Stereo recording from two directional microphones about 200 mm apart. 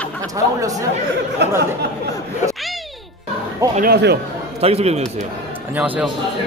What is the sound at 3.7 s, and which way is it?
Speech, 50° right (ahead or behind).